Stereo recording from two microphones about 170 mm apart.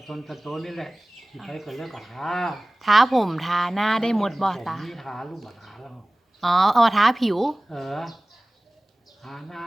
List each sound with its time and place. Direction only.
0.0 s speech: centre (ahead or behind)
9.2 s speech: centre (ahead or behind)